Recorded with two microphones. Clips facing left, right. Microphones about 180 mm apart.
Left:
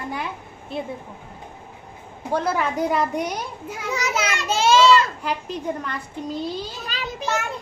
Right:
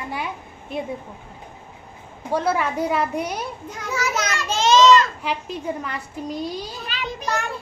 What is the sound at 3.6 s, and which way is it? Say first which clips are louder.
Children playing: left 1 dB; 10° left (ahead or behind).